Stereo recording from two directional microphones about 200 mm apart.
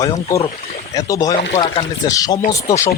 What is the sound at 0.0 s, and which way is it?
Speech, 15° left (ahead or behind).